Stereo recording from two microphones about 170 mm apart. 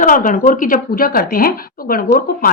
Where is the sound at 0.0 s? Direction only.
55° left (ahead or behind).